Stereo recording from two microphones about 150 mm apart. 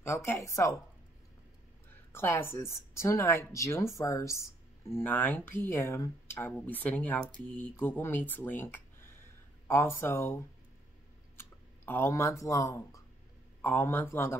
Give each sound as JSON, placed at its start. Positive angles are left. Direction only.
{"t": 0.0, "sound": "a woman's voice", "side_deg": 20}
{"t": 2.1, "sound": "speech", "side_deg": 15}